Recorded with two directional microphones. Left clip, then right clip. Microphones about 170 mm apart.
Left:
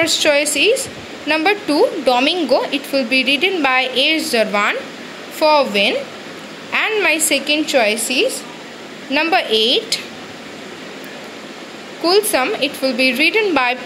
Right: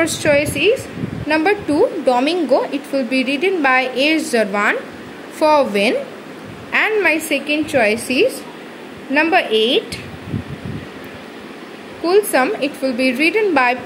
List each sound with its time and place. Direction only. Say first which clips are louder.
0.0 s a woman's voice: left 1 dB; 15° right (ahead or behind)
5.4 s a woman's voice: even; 30° right (ahead or behind)
6.7 s a woman's voice: right 1 dB; 15° right (ahead or behind)
9.1 s a woman's voice: right 1 dB; 10° right (ahead or behind)
12.0 s a woman's voice: even; 5° right (ahead or behind)